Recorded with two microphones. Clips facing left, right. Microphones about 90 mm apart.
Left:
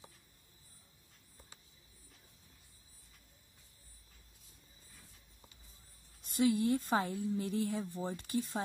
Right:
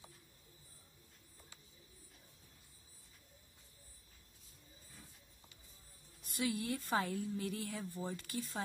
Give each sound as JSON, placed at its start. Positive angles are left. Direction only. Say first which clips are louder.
{"t": 6.2, "sound": "a woman's voice", "louder": "left 8 dB", "side_deg": 30}